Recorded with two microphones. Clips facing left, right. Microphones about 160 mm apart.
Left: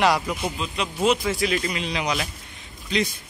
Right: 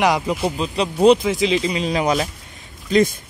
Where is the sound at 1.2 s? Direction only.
20° right (ahead or behind).